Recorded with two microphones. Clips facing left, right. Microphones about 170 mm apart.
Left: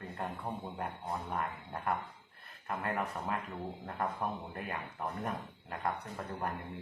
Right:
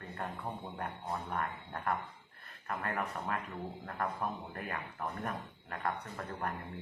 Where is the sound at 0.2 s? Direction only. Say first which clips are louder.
Left 1 dB; 15° left (ahead or behind).